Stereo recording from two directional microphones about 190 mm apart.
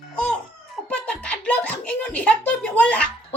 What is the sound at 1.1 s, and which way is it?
A child's voice, 5° left (ahead or behind).